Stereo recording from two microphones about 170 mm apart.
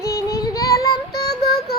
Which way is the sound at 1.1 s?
70° left (ahead or behind).